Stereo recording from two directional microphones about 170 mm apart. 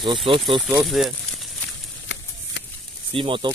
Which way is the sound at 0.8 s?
Centre (ahead or behind).